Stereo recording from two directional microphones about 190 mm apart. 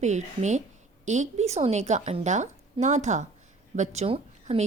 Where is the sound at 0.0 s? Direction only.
40° right (ahead or behind).